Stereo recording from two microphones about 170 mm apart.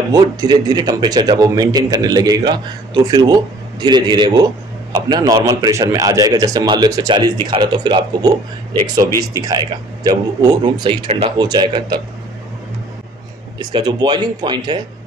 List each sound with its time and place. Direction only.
0.1 s speech: 25° right (ahead or behind)
13.6 s speech: 25° right (ahead or behind)